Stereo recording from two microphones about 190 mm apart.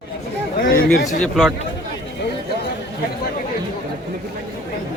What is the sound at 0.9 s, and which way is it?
Speech, 45° left (ahead or behind).